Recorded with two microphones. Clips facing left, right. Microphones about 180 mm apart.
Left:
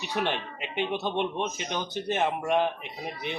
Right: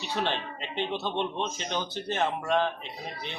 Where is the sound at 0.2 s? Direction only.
15° left (ahead or behind).